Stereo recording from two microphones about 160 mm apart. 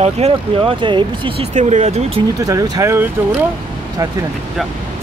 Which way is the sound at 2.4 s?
20° right (ahead or behind).